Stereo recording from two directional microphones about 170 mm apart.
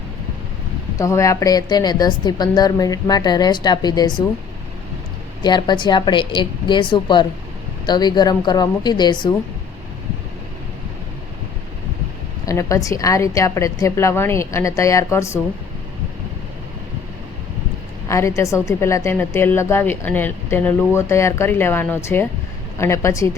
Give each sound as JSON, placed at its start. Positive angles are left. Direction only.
{"t": 0.9, "sound": "a woman's voice", "side_deg": 20}
{"t": 5.4, "sound": "a woman's voice", "side_deg": 25}
{"t": 12.5, "sound": "a woman's voice", "side_deg": 20}
{"t": 18.1, "sound": "a woman's voice", "side_deg": 15}